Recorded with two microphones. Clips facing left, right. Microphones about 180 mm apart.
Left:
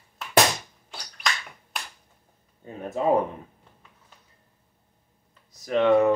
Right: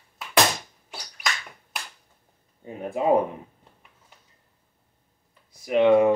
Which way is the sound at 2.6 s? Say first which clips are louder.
Right 1 dB; 15° right (ahead or behind).